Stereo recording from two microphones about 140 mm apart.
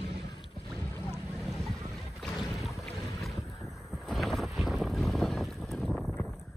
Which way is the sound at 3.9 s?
Centre (ahead or behind).